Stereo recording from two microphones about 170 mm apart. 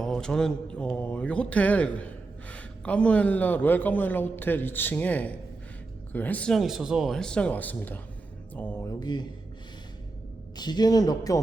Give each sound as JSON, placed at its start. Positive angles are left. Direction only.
{"t": 0.0, "sound": "a man's voice", "side_deg": 5}
{"t": 8.5, "sound": "a sound", "side_deg": 10}
{"t": 10.6, "sound": "speech", "side_deg": 25}